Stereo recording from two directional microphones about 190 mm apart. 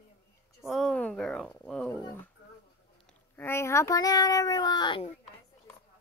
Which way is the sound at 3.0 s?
10° left (ahead or behind).